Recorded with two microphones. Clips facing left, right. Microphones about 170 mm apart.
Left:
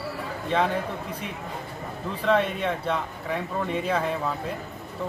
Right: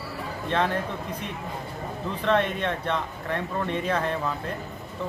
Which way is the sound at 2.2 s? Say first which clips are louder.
Left 1 dB; 10° left (ahead or behind).